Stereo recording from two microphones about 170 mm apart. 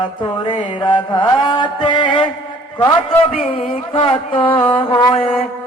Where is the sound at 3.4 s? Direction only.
35° left (ahead or behind).